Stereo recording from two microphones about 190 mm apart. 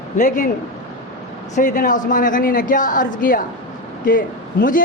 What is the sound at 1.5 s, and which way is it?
A man's voice, 45° left (ahead or behind).